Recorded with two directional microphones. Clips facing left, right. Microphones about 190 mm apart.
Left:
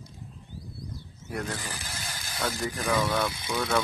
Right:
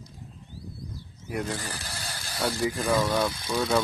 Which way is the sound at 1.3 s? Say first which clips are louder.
Right 2 dB; 10° right (ahead or behind).